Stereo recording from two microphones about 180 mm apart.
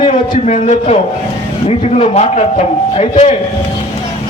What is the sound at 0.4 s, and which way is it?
A man's voice, 40° left (ahead or behind).